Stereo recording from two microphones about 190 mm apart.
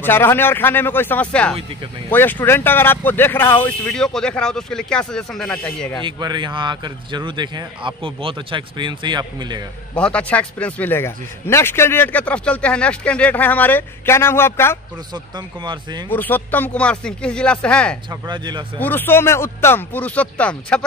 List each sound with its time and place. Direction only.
0.0 s speech: 10° left (ahead or behind)
6.0 s speech: 20° right (ahead or behind)
9.9 s speech: 5° left (ahead or behind)
15.3 s speech: 25° right (ahead or behind)
16.1 s speech: 10° left (ahead or behind)
18.2 s speech: 20° right (ahead or behind)
18.8 s speech: 10° left (ahead or behind)